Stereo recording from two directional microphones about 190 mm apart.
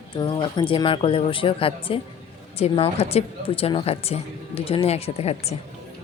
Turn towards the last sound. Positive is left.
turn(degrees=35)  # may be behind; listen again after turning